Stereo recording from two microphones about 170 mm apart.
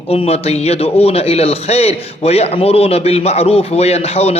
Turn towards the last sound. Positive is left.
turn(degrees=35)  # may be behind; listen again after turning